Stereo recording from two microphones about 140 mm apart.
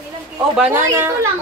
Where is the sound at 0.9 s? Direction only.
20° right (ahead or behind).